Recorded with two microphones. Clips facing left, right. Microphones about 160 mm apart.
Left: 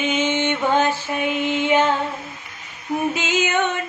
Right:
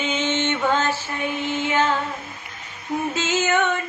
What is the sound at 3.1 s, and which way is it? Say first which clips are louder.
Female singing: even; 15° left (ahead or behind).